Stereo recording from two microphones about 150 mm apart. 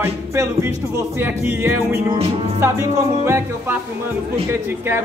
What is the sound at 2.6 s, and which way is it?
Music, 15° right (ahead or behind).